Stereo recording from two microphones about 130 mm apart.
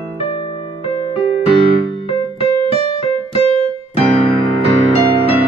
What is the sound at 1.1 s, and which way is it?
Electric piano, 45° left (ahead or behind).